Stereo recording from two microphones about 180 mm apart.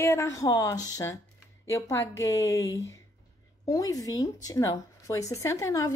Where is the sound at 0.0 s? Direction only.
15° left (ahead or behind).